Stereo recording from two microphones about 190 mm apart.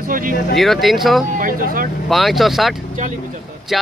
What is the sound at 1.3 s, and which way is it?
Speech, 45° right (ahead or behind).